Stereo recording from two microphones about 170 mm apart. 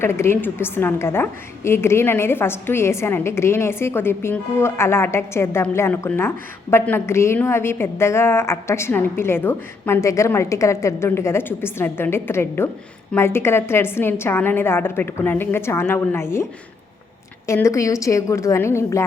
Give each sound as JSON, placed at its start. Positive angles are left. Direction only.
{"t": 0.0, "sound": "a woman's voice", "side_deg": 15}